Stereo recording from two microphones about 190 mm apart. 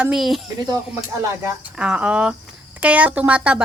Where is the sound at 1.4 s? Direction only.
5° right (ahead or behind).